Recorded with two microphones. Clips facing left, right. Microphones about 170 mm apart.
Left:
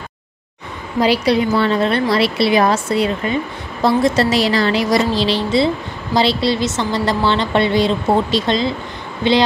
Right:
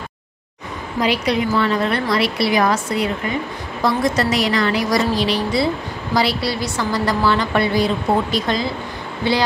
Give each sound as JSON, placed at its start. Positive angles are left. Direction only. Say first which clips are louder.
{"t": 1.0, "sound": "a woman's voice", "louder": "left 4 dB", "side_deg": 30}